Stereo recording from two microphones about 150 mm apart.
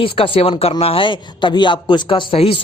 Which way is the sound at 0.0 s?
40° left (ahead or behind).